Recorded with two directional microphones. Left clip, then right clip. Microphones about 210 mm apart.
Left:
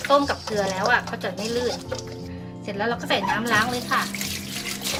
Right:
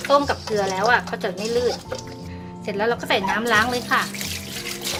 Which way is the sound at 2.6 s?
40° right (ahead or behind).